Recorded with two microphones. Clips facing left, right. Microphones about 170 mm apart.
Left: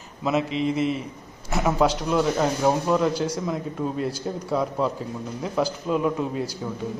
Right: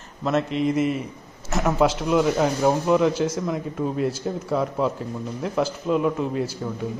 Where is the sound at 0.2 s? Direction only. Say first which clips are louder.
Right 1 dB; centre (ahead or behind).